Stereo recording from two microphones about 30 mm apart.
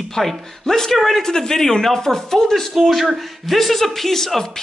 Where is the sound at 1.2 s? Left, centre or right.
Centre.